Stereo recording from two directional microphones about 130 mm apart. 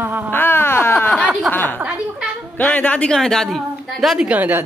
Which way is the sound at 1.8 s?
10° right (ahead or behind).